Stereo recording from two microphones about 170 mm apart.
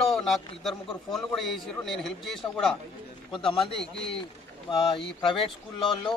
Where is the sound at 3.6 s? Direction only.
5° left (ahead or behind).